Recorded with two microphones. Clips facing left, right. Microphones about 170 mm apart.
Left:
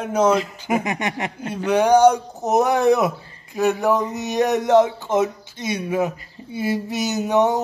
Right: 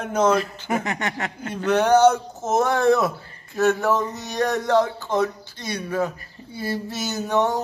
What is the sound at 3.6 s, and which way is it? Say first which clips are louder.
Speech: left 1 dB; 15° left (ahead or behind).